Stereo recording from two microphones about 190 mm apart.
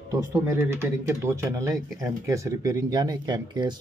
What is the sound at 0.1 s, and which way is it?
Speech, 15° right (ahead or behind).